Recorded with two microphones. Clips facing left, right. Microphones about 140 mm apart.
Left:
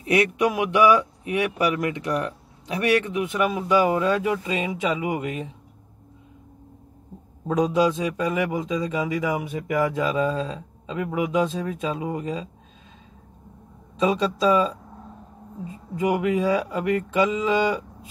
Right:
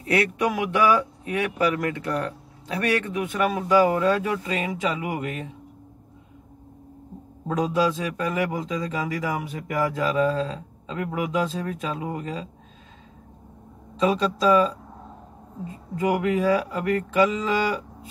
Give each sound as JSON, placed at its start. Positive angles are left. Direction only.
{"t": 0.0, "sound": "a man's voice", "side_deg": 15}
{"t": 7.4, "sound": "a man's voice", "side_deg": 20}
{"t": 13.9, "sound": "a man's voice", "side_deg": 20}
{"t": 16.0, "sound": "a man's voice", "side_deg": 20}